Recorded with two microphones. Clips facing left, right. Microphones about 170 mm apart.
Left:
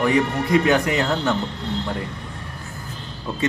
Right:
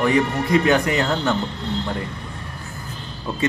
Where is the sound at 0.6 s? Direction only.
5° left (ahead or behind).